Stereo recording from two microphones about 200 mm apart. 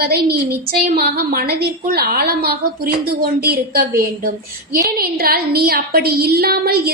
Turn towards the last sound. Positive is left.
turn(degrees=-50)  # may be behind; listen again after turning